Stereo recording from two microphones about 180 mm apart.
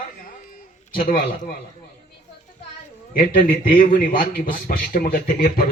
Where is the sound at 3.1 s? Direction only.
50° left (ahead or behind).